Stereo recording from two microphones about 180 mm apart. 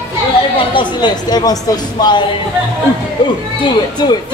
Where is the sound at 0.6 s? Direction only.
25° left (ahead or behind).